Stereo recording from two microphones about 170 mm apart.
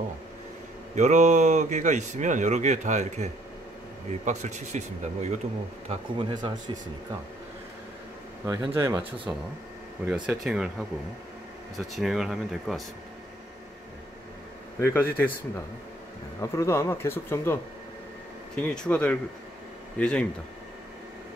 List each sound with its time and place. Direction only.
0.9 s speech: 45° right (ahead or behind)
5.9 s speech: 30° right (ahead or behind)
8.5 s speech: 15° right (ahead or behind)
10.0 s speech: 5° right (ahead or behind)
14.8 s speech: 15° left (ahead or behind)
18.6 s speech: 5° left (ahead or behind)